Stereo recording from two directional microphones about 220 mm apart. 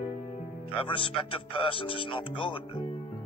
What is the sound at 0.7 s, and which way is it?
Speech, 25° left (ahead or behind).